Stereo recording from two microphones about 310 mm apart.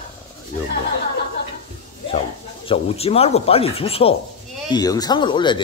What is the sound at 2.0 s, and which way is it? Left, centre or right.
Speech, centre.